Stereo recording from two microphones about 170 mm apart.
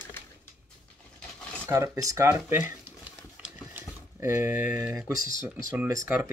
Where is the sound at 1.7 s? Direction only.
20° right (ahead or behind).